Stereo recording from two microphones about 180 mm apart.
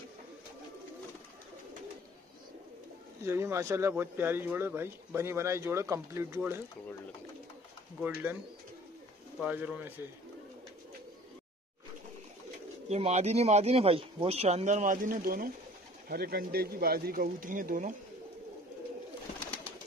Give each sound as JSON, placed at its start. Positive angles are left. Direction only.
{"t": 3.3, "sound": "speech", "side_deg": -15}
{"t": 8.0, "sound": "speech", "side_deg": -10}
{"t": 9.4, "sound": "speech", "side_deg": -5}
{"t": 12.9, "sound": "speech", "side_deg": -35}